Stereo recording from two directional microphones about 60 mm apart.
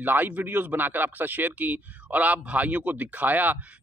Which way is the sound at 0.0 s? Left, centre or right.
Right.